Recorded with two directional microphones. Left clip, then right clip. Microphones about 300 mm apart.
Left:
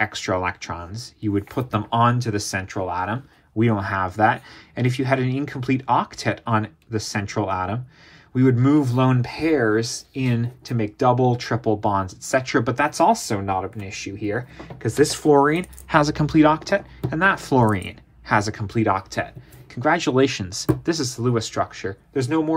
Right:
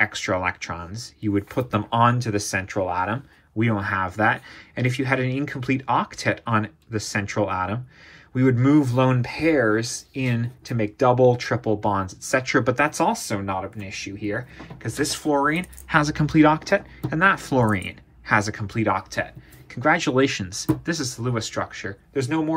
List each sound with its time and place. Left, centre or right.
0.0 s speech: centre